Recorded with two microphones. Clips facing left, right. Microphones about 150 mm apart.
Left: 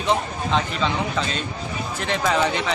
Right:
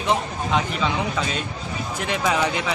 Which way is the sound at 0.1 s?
10° right (ahead or behind).